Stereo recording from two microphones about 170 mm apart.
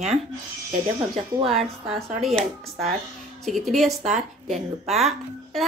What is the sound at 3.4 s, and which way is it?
Speech, centre (ahead or behind).